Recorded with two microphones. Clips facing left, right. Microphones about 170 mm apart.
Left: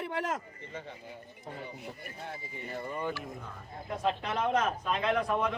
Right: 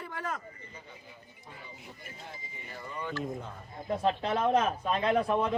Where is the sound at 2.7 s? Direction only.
40° left (ahead or behind).